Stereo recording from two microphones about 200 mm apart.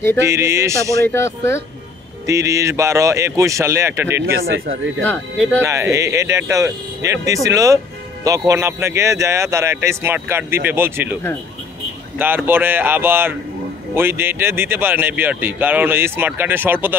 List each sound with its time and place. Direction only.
0.2 s speech: 15° right (ahead or behind)
1.0 s speech: 10° left (ahead or behind)
2.2 s speech: 15° right (ahead or behind)
4.4 s speech: 50° right (ahead or behind)
5.0 s speech: 5° left (ahead or behind)
5.6 s speech: 15° right (ahead or behind)
12.2 s speech: 10° right (ahead or behind)